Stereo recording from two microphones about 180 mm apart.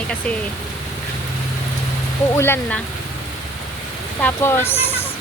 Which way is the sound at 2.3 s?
15° left (ahead or behind).